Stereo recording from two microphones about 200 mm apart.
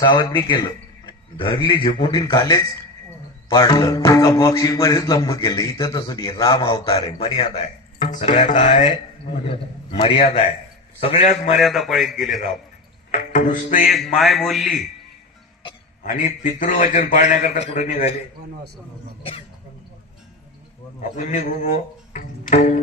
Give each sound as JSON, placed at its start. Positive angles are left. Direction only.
{"t": 0.0, "sound": "a man's voice", "side_deg": 25}
{"t": 7.2, "sound": "speech", "side_deg": 25}
{"t": 8.1, "sound": "a man's voice", "side_deg": 40}
{"t": 9.5, "sound": "a man's voice", "side_deg": 25}
{"t": 11.5, "sound": "a man's voice", "side_deg": 0}
{"t": 13.1, "sound": "a man's voice", "side_deg": 40}
{"t": 13.8, "sound": "a man's voice", "side_deg": 0}
{"t": 16.0, "sound": "a man's voice", "side_deg": 40}
{"t": 21.0, "sound": "a man's voice", "side_deg": 40}